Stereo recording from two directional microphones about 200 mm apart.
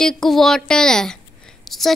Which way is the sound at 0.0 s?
Centre (ahead or behind).